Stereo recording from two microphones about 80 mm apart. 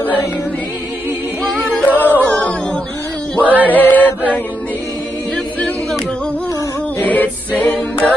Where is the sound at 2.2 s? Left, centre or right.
Centre.